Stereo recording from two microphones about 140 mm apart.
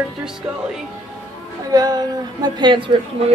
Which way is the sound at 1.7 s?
30° right (ahead or behind).